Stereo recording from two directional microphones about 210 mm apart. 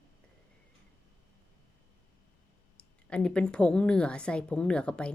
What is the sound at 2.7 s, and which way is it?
A woman's voice, 5° left (ahead or behind).